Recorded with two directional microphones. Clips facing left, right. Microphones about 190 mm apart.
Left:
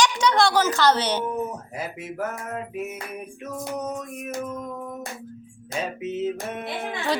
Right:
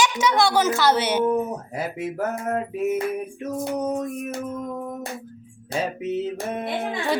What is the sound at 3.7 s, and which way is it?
Music, 30° right (ahead or behind).